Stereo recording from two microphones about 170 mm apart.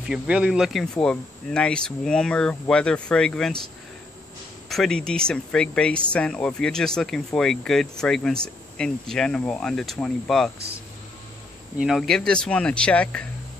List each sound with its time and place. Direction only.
0.0 s speech: 5° right (ahead or behind)
4.6 s speech: centre (ahead or behind)
11.8 s speech: centre (ahead or behind)